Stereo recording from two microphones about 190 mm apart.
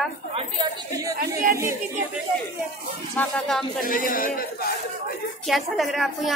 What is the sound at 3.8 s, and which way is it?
Speech, 45° left (ahead or behind).